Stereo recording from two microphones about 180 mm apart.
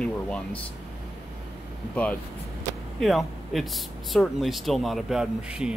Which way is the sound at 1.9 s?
10° left (ahead or behind).